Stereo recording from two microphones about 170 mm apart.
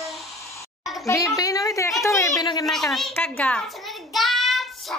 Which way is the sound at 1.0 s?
20° left (ahead or behind).